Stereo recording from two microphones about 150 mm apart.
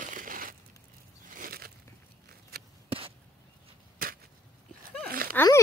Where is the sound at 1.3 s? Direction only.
80° right.